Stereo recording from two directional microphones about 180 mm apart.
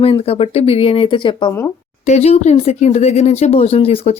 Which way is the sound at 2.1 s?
35° left (ahead or behind).